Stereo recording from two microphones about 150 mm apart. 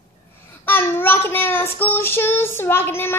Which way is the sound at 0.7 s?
15° left (ahead or behind).